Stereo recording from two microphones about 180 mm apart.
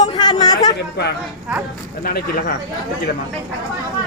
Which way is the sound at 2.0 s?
55° left (ahead or behind).